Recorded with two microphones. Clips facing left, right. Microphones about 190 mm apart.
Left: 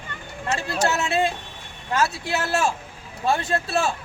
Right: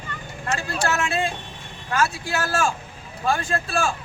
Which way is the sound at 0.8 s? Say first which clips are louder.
Left 2 dB; 25° left (ahead or behind).